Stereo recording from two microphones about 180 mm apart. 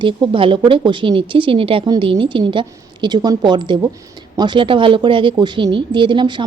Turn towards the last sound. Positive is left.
turn(degrees=-25)  # may be behind; listen again after turning